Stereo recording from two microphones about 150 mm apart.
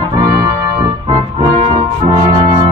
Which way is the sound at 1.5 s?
45° right (ahead or behind).